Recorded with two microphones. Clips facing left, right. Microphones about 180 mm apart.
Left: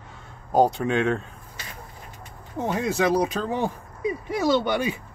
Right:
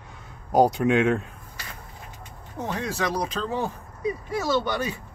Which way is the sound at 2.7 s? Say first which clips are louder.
Left 6 dB; 10° left (ahead or behind).